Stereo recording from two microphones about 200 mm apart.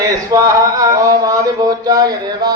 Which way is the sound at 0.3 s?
15° right (ahead or behind).